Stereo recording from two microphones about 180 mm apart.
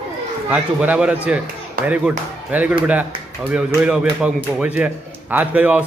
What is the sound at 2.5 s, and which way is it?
A man's voice, 10° right (ahead or behind).